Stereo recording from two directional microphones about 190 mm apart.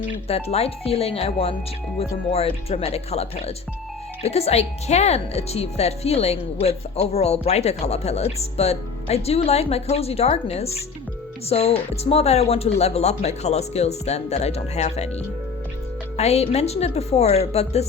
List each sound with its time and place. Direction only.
0.3 s speech: 30° left (ahead or behind)
16.1 s speech: 35° left (ahead or behind)